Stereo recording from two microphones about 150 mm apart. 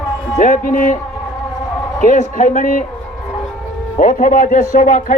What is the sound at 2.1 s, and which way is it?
Speech, 55° left (ahead or behind).